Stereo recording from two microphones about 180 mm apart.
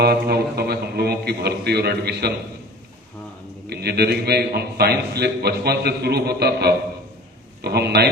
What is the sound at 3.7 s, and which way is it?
A man's voice, 65° right (ahead or behind).